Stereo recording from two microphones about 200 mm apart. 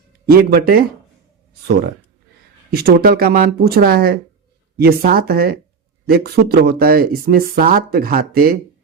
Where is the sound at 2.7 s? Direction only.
50° right (ahead or behind).